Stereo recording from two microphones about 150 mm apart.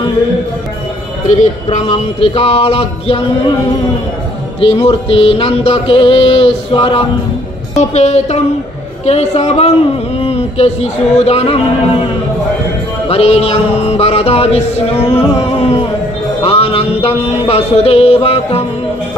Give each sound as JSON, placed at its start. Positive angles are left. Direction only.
{"t": 1.2, "sound": "music", "side_deg": 50}
{"t": 4.6, "sound": "music", "side_deg": 40}
{"t": 7.7, "sound": "a woman's voice", "side_deg": 50}
{"t": 13.1, "sound": "a woman's voice", "side_deg": 45}
{"t": 16.4, "sound": "a sound", "side_deg": 40}